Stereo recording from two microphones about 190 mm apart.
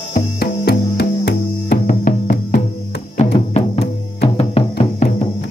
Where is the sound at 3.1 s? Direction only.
30° left (ahead or behind).